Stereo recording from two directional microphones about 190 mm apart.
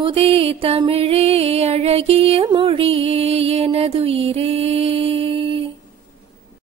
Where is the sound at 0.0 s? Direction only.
30° right (ahead or behind).